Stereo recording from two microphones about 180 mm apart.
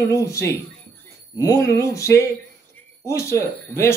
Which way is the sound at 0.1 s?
15° left (ahead or behind).